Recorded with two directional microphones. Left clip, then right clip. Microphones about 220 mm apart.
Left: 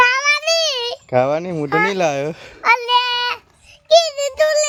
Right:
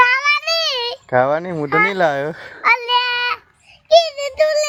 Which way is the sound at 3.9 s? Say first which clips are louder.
Even; 25° left (ahead or behind).